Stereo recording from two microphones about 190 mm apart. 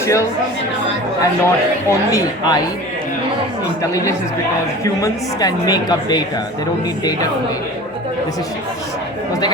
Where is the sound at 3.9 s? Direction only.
15° left (ahead or behind).